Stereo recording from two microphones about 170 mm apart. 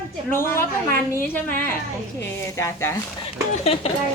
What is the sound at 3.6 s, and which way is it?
Speech, 35° left (ahead or behind).